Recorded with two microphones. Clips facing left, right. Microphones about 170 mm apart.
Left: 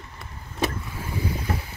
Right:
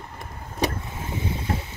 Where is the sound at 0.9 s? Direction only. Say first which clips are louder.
Even; 20° right (ahead or behind).